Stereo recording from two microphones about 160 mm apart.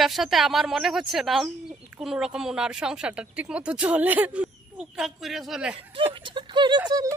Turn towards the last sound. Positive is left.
turn(degrees=-30)  # may be behind; listen again after turning